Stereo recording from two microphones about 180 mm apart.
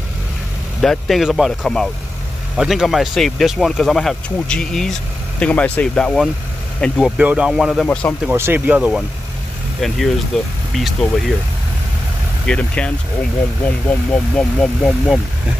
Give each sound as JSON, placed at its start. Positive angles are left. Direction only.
{"t": 0.7, "sound": "speech", "side_deg": 0}
{"t": 8.3, "sound": "speech", "side_deg": -10}
{"t": 12.4, "sound": "speech", "side_deg": 5}